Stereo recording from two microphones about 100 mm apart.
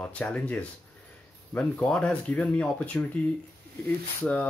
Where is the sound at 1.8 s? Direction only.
10° left (ahead or behind).